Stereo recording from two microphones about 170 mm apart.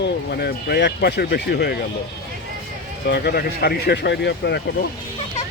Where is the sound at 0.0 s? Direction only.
70° left (ahead or behind).